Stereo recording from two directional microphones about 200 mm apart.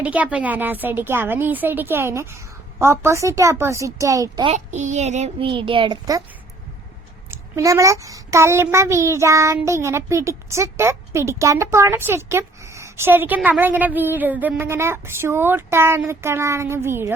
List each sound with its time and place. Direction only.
0.0 s a child's voice: 5° right (ahead or behind)
4.5 s child singing: 35° right (ahead or behind); by 6.2 s 20° right (ahead or behind)
7.3 s a child's voice: 15° right (ahead or behind)